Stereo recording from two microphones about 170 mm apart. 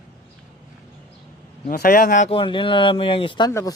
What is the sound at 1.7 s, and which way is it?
Speech, 65° left (ahead or behind).